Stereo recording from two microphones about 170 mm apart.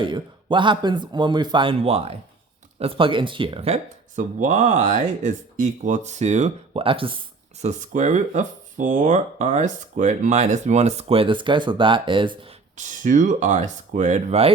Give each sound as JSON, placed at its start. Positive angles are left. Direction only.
{"t": 0.0, "sound": "a man's voice", "side_deg": -30}
{"t": 7.6, "sound": "speech", "side_deg": -45}
{"t": 12.7, "sound": "speech", "side_deg": -45}